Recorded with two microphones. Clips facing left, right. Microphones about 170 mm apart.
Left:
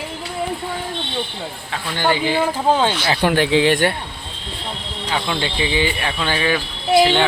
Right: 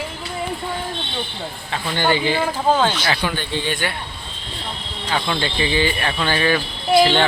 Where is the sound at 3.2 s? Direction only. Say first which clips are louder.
Left 9 dB; 80° left.